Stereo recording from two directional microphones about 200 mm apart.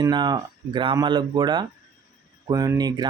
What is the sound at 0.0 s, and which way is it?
Speech, 20° right (ahead or behind).